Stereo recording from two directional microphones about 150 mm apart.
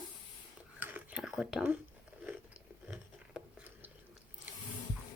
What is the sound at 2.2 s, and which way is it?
Chewing, 5° right (ahead or behind).